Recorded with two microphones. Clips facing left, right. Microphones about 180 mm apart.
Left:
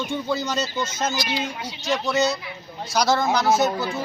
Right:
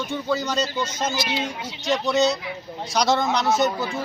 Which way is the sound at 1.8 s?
Centre (ahead or behind).